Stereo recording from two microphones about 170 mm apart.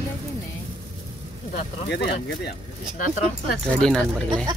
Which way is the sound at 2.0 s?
70° left (ahead or behind).